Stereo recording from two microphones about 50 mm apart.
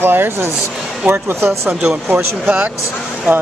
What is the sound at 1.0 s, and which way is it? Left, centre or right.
Speech, centre.